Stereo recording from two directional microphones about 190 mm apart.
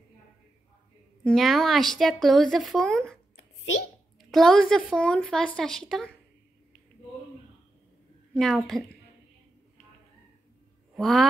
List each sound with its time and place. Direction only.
1.2 s speech: centre (ahead or behind)
4.2 s speech: centre (ahead or behind)
8.4 s speech: centre (ahead or behind)
11.0 s speech: centre (ahead or behind)